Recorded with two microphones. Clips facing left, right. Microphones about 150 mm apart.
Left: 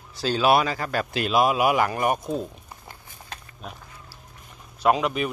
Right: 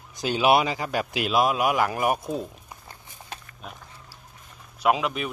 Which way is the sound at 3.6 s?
Centre (ahead or behind).